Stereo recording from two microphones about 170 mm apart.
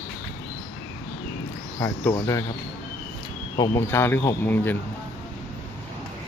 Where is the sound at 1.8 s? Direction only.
15° left (ahead or behind).